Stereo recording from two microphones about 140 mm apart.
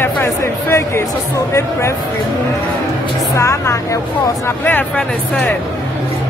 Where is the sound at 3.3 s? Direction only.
20° left (ahead or behind).